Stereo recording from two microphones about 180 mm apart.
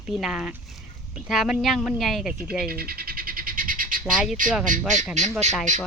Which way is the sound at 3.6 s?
50° right (ahead or behind).